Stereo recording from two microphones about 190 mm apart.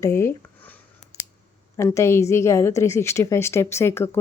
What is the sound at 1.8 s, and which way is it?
A woman's voice, 15° left (ahead or behind).